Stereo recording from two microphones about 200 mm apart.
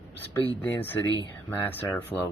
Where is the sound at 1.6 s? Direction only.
10° left (ahead or behind).